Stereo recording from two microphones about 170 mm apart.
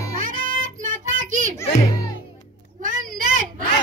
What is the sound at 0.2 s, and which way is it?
Music, 50° right (ahead or behind).